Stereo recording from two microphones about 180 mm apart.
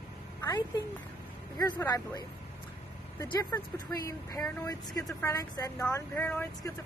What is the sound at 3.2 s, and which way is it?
Speech, 20° left (ahead or behind).